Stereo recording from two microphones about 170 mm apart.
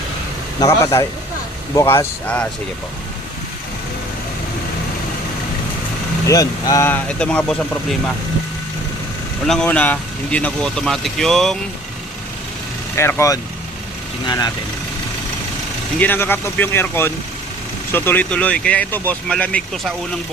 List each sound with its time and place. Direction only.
0.6 s speech: 20° left (ahead or behind)
6.2 s speech: 20° left (ahead or behind)
9.5 s speech: 5° left (ahead or behind)
13.0 s speech: 15° left (ahead or behind)
16.0 s speech: 10° left (ahead or behind)